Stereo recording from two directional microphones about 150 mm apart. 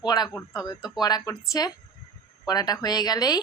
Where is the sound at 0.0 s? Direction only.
30° left (ahead or behind).